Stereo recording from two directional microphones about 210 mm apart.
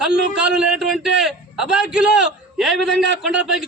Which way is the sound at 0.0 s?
5° right (ahead or behind).